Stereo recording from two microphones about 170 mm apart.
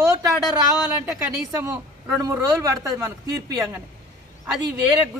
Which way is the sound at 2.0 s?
15° right (ahead or behind).